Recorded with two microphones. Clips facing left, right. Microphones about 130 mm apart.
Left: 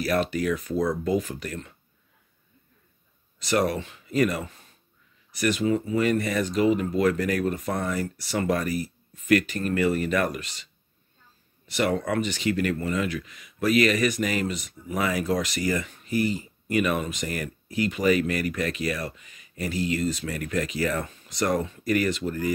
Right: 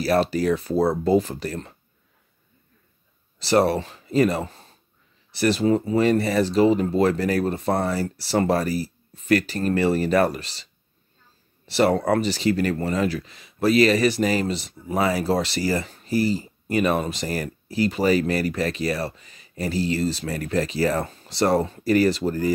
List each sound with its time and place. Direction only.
0.0 s speech: 35° right (ahead or behind)
3.3 s speech: 30° right (ahead or behind)